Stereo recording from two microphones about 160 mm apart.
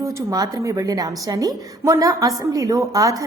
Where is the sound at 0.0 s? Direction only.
20° right (ahead or behind).